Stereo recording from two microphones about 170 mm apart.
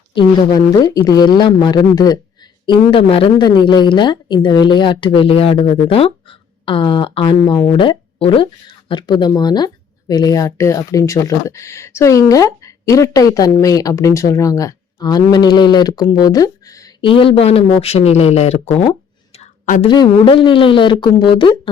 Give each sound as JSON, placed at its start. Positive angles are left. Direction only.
{"t": 0.1, "sound": "a woman's voice", "side_deg": 25}
{"t": 19.4, "sound": "a sound", "side_deg": 45}
{"t": 19.9, "sound": "a woman's voice", "side_deg": 25}